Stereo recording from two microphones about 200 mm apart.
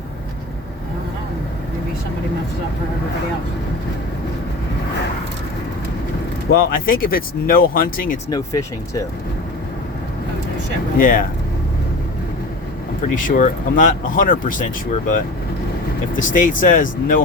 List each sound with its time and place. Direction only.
6.5 s speech: 45° left (ahead or behind)
8.3 s speech: 15° left (ahead or behind)
10.9 s speech: 45° left (ahead or behind)
13.1 s speech: 40° left (ahead or behind)
16.1 s speech: 40° left (ahead or behind)